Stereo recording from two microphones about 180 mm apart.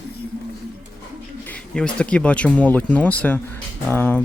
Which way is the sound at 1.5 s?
5° left (ahead or behind).